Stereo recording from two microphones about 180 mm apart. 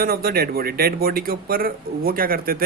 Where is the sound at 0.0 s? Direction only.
55° right (ahead or behind).